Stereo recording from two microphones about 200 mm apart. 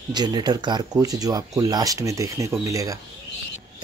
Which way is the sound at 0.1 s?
20° right (ahead or behind).